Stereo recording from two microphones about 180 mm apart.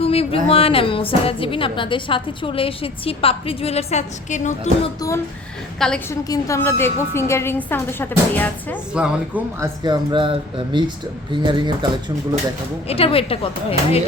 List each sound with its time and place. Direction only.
0.0 s a sound: 35° left (ahead or behind)
0.4 s a woman's voice: 30° left (ahead or behind)
6.1 s a woman's voice: 20° left (ahead or behind)
8.9 s a woman's voice: 5° right (ahead or behind)
9.6 s speech: 25° right (ahead or behind)
12.9 s a woman's voice: 30° left (ahead or behind)